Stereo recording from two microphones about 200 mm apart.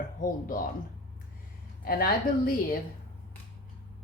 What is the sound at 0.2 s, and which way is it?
Speech, 45° left (ahead or behind).